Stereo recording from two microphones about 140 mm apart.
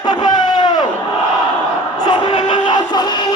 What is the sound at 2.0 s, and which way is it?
Music, 40° left (ahead or behind).